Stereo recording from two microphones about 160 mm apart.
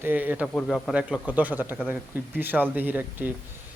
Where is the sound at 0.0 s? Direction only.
10° right (ahead or behind).